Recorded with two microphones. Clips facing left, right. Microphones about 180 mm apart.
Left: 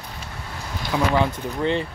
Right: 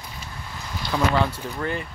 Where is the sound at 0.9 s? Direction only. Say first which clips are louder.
Left 1 dB; 5° left (ahead or behind).